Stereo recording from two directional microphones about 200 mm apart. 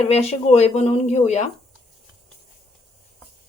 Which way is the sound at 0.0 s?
30° left (ahead or behind).